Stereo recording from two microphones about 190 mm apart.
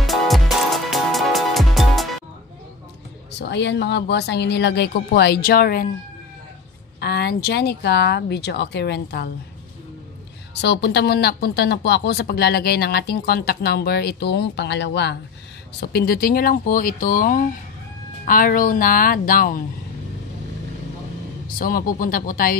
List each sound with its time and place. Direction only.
0.0 s music: centre (ahead or behind)
3.3 s speech: 65° left (ahead or behind)
7.0 s speech: 60° left (ahead or behind)
10.6 s speech: 60° left (ahead or behind)
21.5 s speech: 50° left (ahead or behind)